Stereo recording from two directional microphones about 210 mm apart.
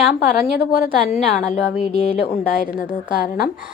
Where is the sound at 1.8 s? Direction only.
30° left (ahead or behind).